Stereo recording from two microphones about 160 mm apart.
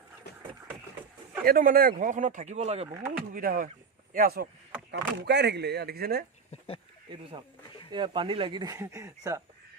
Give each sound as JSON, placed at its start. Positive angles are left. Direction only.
{"t": 1.5, "sound": "speech", "side_deg": -65}
{"t": 3.3, "sound": "speech", "side_deg": -65}
{"t": 4.9, "sound": "speech", "side_deg": -90}
{"t": 7.9, "sound": "speech", "side_deg": -30}